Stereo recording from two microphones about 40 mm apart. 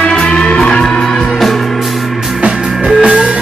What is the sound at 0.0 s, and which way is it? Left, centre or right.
Music, left.